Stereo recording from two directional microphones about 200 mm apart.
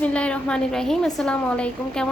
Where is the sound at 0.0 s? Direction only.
5° left (ahead or behind).